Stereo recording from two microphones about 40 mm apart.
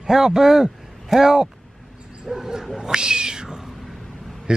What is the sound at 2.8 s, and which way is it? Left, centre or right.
Cat, centre.